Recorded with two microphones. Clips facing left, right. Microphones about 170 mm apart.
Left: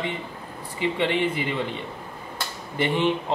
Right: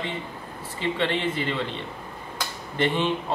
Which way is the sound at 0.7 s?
15° left (ahead or behind).